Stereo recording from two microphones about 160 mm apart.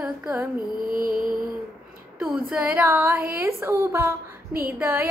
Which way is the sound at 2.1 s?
5° right (ahead or behind).